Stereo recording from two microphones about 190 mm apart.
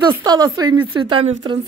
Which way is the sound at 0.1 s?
20° right (ahead or behind).